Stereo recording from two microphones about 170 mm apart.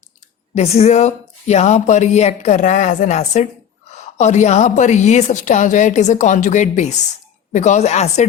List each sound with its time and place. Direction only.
0.5 s a woman's voice: 35° left (ahead or behind)